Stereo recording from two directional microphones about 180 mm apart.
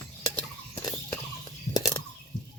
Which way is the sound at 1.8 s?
20° left (ahead or behind).